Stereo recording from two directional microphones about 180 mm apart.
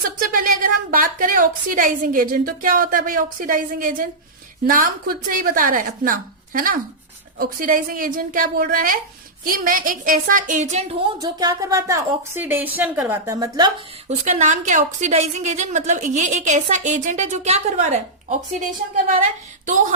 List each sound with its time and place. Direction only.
0.2 s a woman's voice: 50° right (ahead or behind)
11.2 s a woman's voice: 20° right (ahead or behind)
14.1 s a woman's voice: 40° right (ahead or behind)